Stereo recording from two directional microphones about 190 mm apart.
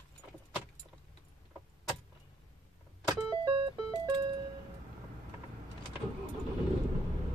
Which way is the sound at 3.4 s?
30° right (ahead or behind).